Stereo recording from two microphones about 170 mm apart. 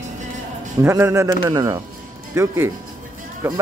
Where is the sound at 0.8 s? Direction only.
15° right (ahead or behind).